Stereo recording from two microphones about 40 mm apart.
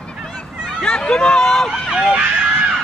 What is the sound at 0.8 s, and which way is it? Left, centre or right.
Speech, left.